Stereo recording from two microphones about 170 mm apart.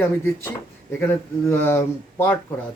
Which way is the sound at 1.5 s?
15° left (ahead or behind).